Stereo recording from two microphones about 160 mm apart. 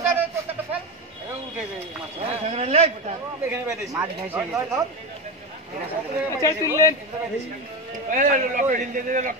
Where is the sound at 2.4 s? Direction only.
40° right (ahead or behind).